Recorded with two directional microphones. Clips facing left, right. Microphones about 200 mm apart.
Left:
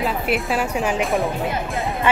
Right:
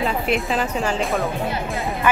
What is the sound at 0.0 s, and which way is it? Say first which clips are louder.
Speech: even; 5° left (ahead or behind).